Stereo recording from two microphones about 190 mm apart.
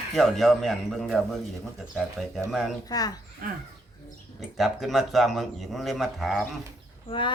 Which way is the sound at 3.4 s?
45° right (ahead or behind).